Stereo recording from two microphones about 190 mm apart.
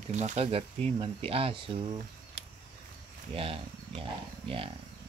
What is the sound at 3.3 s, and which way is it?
Speech, 30° right (ahead or behind).